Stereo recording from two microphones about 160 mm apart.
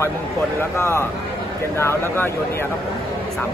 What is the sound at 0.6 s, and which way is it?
Speech, 15° left (ahead or behind).